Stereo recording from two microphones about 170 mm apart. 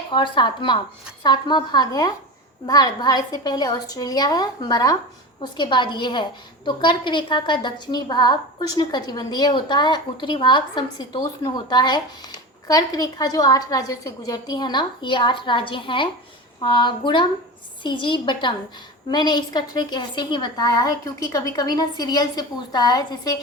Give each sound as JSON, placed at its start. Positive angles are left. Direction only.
{"t": 0.1, "sound": "a woman's voice", "side_deg": 30}